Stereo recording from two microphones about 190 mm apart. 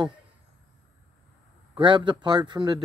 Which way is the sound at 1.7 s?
25° right (ahead or behind).